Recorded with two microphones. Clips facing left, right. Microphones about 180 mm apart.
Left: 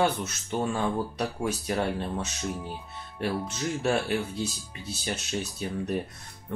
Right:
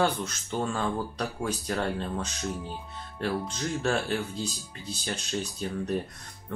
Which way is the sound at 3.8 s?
5° left (ahead or behind).